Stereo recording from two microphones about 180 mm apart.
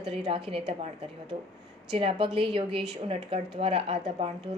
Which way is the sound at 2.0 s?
30° right (ahead or behind).